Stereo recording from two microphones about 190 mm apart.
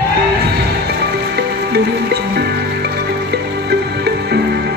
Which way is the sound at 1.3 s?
60° right (ahead or behind).